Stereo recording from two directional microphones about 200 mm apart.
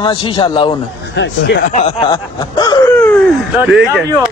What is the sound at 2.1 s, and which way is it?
Speech, 20° left (ahead or behind).